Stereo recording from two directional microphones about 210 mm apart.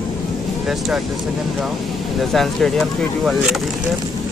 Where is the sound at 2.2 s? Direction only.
Centre (ahead or behind).